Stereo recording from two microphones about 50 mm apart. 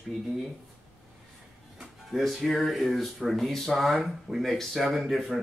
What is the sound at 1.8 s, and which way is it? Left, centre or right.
Music, centre.